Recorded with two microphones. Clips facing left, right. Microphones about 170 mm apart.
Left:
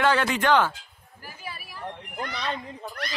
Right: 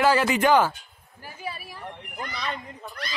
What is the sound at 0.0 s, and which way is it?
Speech, 5° right (ahead or behind).